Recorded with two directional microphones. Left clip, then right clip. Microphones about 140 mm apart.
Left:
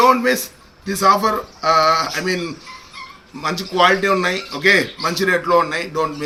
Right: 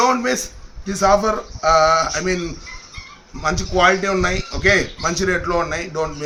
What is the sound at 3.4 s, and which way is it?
A man's voice, 20° right (ahead or behind).